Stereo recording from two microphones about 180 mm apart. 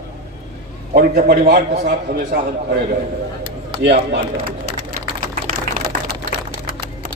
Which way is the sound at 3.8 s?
70° right (ahead or behind).